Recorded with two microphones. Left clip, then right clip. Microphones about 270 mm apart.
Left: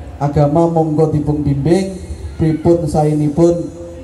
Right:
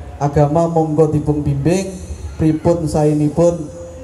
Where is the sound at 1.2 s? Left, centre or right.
Centre.